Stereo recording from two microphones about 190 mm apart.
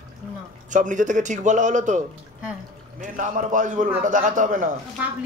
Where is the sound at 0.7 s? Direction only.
40° right (ahead or behind).